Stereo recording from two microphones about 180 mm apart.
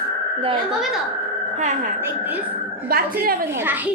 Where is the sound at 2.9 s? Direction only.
55° right (ahead or behind).